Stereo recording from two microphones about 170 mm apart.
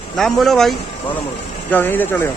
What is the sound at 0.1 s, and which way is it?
A man's voice, 5° left (ahead or behind).